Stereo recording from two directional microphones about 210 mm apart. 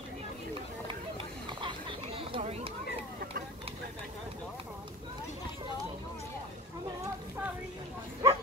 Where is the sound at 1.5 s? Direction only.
25° right (ahead or behind).